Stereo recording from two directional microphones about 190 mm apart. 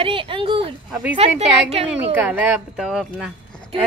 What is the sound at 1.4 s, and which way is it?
Speech, 30° right (ahead or behind).